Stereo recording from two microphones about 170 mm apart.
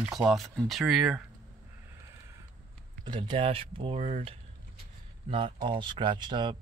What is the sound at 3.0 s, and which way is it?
Speech, 30° right (ahead or behind).